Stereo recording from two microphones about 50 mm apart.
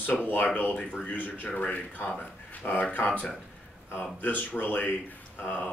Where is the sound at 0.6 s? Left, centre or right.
Left.